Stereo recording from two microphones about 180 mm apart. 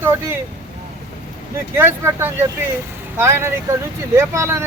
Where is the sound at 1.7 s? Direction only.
15° right (ahead or behind).